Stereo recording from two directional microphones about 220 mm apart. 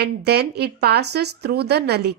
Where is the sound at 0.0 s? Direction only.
50° right (ahead or behind).